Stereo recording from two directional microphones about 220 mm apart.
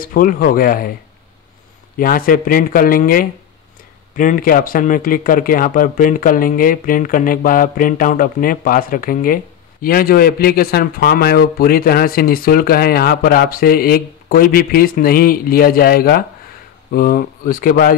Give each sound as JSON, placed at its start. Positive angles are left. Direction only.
{"t": 0.0, "sound": "speech", "side_deg": 40}
{"t": 2.0, "sound": "speech", "side_deg": 40}